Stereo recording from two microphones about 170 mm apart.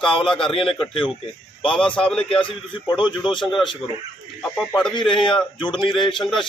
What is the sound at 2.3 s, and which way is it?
Speech, 30° left (ahead or behind).